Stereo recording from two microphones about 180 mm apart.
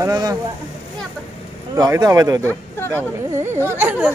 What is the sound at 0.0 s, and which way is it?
Speech, 20° right (ahead or behind).